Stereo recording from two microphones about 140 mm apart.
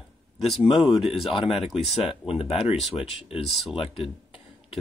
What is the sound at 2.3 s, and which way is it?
Speech, 45° left (ahead or behind).